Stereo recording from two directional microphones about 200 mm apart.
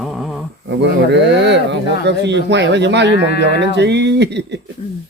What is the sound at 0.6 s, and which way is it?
Speech, 60° right (ahead or behind).